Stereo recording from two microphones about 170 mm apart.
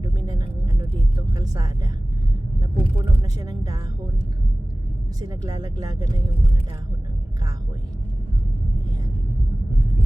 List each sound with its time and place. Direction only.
0.0 s a sound: 25° right (ahead or behind)
1.4 s speech: 25° right (ahead or behind)
5.2 s speech: 20° right (ahead or behind)